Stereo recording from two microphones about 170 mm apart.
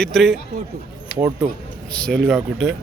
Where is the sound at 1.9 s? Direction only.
5° left (ahead or behind).